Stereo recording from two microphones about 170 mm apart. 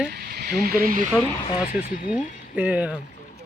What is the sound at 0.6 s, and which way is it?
Speech, 60° right (ahead or behind).